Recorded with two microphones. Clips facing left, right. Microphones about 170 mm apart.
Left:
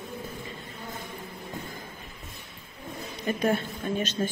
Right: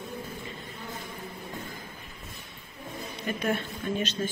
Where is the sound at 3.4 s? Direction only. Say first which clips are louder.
Left 3 dB; 35° left (ahead or behind).